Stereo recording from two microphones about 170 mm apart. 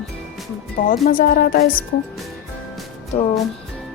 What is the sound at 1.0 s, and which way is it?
Speech, 55° left (ahead or behind).